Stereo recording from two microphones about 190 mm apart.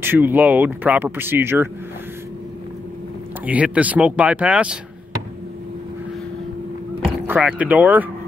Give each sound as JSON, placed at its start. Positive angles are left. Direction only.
{"t": 0.0, "sound": "speech", "side_deg": -10}
{"t": 3.4, "sound": "speech", "side_deg": -5}
{"t": 7.2, "sound": "speech", "side_deg": -5}